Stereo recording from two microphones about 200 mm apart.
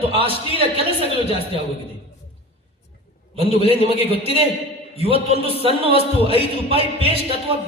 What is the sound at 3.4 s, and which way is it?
Speech, 30° right (ahead or behind).